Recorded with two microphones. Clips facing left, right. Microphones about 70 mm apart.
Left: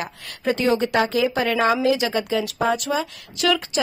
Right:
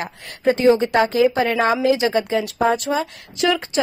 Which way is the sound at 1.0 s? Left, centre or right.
Right.